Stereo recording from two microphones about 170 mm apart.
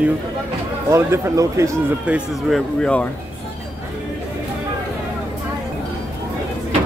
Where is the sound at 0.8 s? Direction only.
15° right (ahead or behind).